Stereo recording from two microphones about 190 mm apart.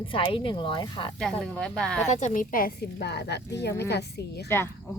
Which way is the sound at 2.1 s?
40° left (ahead or behind).